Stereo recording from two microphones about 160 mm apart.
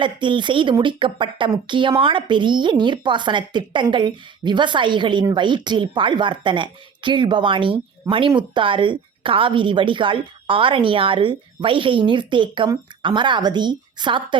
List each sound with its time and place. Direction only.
0.0 s a woman's voice: 30° right (ahead or behind)
8.1 s speech: 20° right (ahead or behind)
8.4 s a woman's voice: 30° right (ahead or behind)